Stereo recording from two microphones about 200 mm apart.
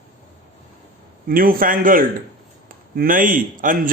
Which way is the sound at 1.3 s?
45° right (ahead or behind).